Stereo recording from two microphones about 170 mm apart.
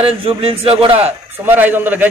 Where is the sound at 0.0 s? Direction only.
35° right (ahead or behind).